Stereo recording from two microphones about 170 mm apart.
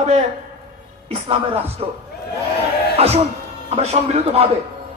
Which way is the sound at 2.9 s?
35° right (ahead or behind).